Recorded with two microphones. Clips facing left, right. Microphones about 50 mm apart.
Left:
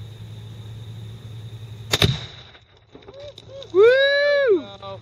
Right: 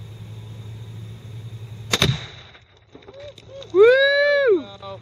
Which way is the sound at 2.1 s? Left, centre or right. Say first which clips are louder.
Right 1 dB; centre.